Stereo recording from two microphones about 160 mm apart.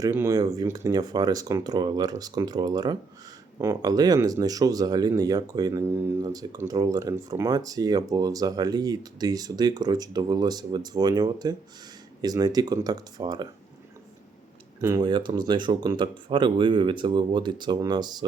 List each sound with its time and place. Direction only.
0.0 s speech: 15° right (ahead or behind)
14.8 s speech: 25° right (ahead or behind)